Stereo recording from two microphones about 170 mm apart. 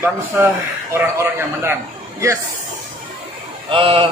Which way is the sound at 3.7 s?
35° right (ahead or behind).